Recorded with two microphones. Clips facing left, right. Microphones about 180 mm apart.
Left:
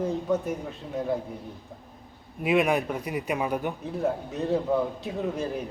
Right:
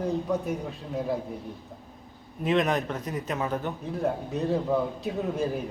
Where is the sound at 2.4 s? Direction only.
10° left (ahead or behind).